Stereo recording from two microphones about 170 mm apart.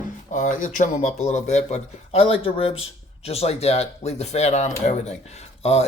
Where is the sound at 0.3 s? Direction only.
50° left (ahead or behind).